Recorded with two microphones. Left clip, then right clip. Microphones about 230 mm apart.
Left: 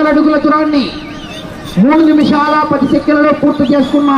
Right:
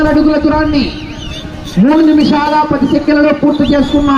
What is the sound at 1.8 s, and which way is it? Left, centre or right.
Speech, centre.